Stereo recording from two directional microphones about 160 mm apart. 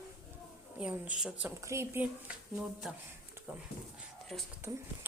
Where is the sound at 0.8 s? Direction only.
10° right (ahead or behind).